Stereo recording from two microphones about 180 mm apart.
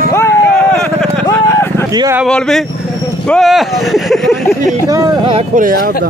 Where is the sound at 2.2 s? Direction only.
5° left (ahead or behind).